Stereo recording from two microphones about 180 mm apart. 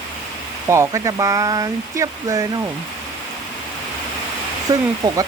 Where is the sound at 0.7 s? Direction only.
15° right (ahead or behind).